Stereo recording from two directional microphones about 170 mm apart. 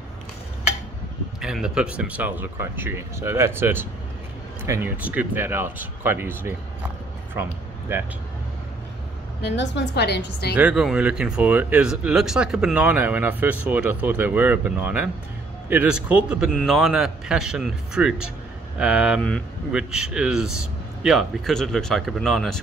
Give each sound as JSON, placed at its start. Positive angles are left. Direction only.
{"t": 1.4, "sound": "speech", "side_deg": -5}
{"t": 7.9, "sound": "speech", "side_deg": -15}
{"t": 9.4, "sound": "a woman's voice", "side_deg": 85}
{"t": 10.5, "sound": "a man's voice", "side_deg": -5}